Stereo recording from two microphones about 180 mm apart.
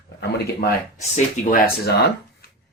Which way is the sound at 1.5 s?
55° left (ahead or behind).